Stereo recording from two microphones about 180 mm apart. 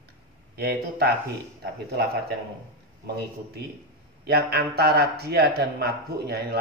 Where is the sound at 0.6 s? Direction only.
60° right (ahead or behind).